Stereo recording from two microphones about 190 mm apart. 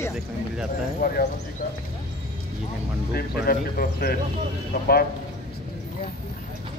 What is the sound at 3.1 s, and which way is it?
Speech, 55° left (ahead or behind).